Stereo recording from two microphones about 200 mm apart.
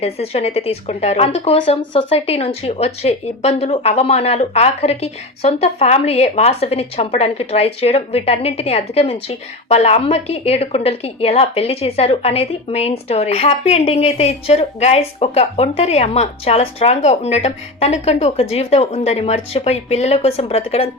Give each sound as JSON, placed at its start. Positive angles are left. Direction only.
{"t": 0.0, "sound": "a woman's voice", "side_deg": 30}